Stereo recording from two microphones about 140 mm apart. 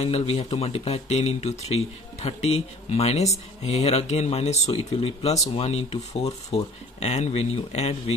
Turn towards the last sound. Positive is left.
turn(degrees=50)  # may be behind; listen again after turning